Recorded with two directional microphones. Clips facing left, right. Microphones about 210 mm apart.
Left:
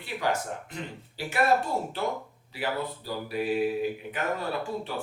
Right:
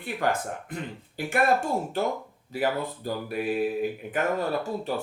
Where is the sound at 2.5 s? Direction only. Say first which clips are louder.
Right 4 dB; 45° right (ahead or behind).